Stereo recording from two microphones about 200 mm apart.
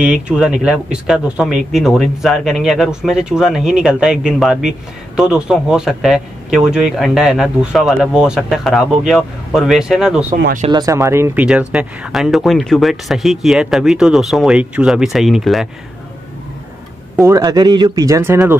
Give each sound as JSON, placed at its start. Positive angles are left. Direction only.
{"t": 0.3, "sound": "speech", "side_deg": -5}
{"t": 10.7, "sound": "speech", "side_deg": -15}
{"t": 17.3, "sound": "speech", "side_deg": -20}